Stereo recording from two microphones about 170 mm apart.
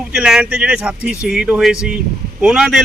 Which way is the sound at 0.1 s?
5° right (ahead or behind).